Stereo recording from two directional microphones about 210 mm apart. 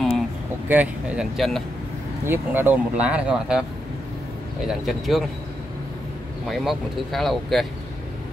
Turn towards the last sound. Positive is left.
turn(degrees=0)  # may be behind; listen again after turning